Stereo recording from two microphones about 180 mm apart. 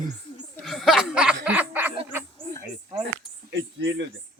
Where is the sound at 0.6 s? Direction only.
Centre (ahead or behind).